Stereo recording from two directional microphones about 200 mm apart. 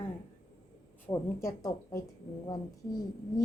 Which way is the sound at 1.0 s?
15° left (ahead or behind).